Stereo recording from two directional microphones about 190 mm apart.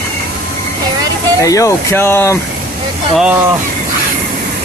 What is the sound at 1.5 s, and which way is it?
Speech, 15° left (ahead or behind).